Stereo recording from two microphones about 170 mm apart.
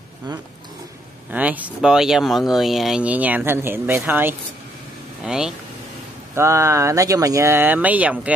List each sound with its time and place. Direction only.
1.3 s speech: 10° right (ahead or behind)
6.3 s speech: 15° right (ahead or behind)